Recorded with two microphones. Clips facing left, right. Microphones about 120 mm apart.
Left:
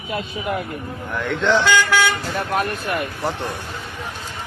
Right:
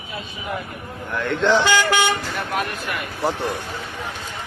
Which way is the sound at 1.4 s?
10° right (ahead or behind).